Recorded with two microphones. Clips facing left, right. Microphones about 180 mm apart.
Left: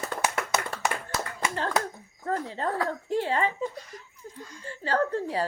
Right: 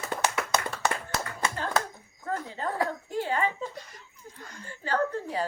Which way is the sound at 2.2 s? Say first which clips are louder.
Left 3 dB; 35° left (ahead or behind).